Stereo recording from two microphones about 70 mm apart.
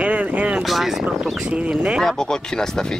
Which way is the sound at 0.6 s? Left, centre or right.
Centre.